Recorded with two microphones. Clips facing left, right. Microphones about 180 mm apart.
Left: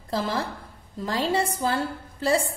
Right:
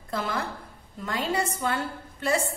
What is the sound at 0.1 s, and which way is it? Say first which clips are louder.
A woman's voice: left 3 dB; 30° left (ahead or behind).